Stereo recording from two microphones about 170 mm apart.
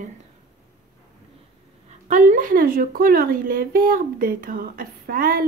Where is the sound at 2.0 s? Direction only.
50° right (ahead or behind).